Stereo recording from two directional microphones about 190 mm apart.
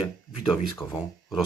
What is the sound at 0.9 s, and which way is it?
Speech, 5° right (ahead or behind).